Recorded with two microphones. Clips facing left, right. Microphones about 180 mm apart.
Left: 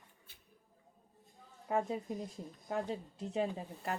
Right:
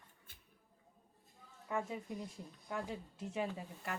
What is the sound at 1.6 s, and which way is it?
A woman's voice, 40° left (ahead or behind).